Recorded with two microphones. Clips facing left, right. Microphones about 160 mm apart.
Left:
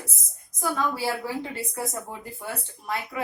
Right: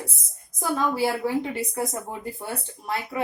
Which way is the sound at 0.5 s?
20° right (ahead or behind).